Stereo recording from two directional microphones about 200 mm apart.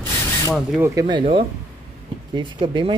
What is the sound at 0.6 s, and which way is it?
Speech, 10° right (ahead or behind).